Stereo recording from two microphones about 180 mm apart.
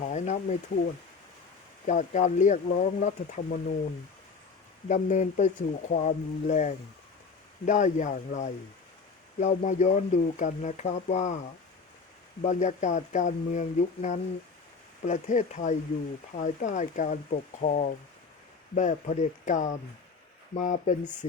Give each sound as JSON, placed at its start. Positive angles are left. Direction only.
{"t": 0.0, "sound": "speech", "side_deg": 40}
{"t": 1.9, "sound": "speech", "side_deg": 45}
{"t": 4.9, "sound": "speech", "side_deg": 45}
{"t": 12.4, "sound": "speech", "side_deg": 40}